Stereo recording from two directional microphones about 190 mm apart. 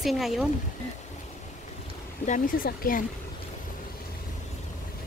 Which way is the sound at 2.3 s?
45° left (ahead or behind).